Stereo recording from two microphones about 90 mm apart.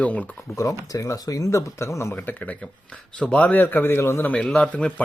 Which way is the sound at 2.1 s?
20° left (ahead or behind).